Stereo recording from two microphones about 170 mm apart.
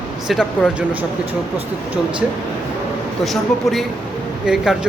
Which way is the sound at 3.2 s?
Centre (ahead or behind).